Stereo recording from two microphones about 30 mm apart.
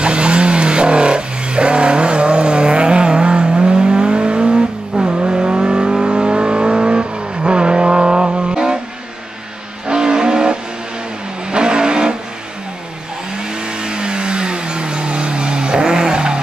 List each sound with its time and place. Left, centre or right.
0.0 s vehicle: right
9.8 s vehicle: right
13.4 s vehicle: right